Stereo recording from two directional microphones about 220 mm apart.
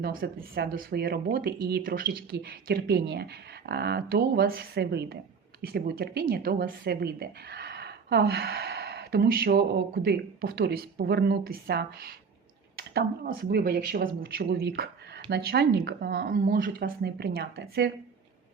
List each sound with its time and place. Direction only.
0.0 s speech: 40° right (ahead or behind)